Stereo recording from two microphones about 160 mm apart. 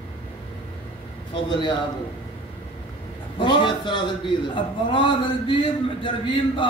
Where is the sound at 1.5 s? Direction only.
30° left (ahead or behind).